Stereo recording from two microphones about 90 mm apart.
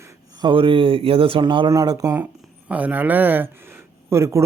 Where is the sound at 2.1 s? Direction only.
20° right (ahead or behind).